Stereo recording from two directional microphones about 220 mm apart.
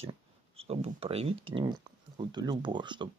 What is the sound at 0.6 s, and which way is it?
Speech, 25° right (ahead or behind).